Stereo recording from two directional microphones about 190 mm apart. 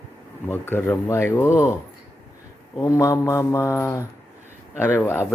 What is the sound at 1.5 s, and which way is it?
Speech, 10° right (ahead or behind).